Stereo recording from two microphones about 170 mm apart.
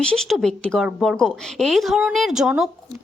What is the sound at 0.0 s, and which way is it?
Speech, 5° left (ahead or behind).